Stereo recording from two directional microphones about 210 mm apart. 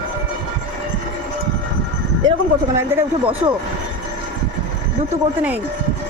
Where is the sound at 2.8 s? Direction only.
10° right (ahead or behind).